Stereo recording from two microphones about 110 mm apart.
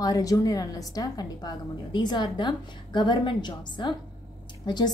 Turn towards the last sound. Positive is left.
turn(degrees=40)  # may be behind; listen again after turning